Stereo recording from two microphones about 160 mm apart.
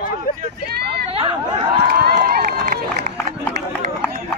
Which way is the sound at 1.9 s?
70° right (ahead or behind).